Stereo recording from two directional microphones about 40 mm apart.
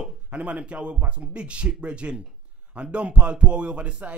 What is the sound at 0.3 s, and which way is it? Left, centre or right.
Speech, right.